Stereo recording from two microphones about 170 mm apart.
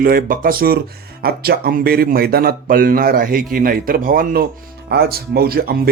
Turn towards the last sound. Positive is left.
turn(degrees=-65)  # may be behind; listen again after turning